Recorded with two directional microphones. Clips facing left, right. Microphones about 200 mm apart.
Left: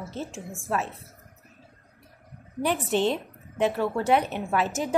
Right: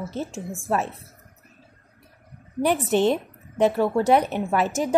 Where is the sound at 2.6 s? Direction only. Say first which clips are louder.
Right 4 dB; 50° right (ahead or behind).